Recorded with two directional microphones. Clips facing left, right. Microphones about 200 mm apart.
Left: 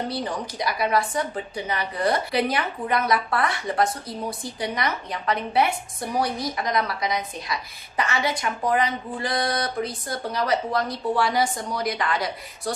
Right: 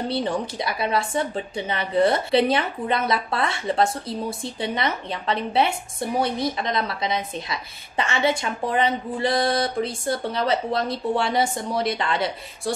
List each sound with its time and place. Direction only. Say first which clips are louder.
0.1 s a woman's voice: right 4 dB; 25° right (ahead or behind)